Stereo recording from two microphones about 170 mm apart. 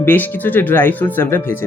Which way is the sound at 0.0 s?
10° left (ahead or behind).